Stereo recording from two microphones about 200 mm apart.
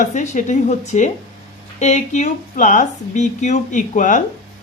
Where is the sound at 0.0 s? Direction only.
40° left (ahead or behind).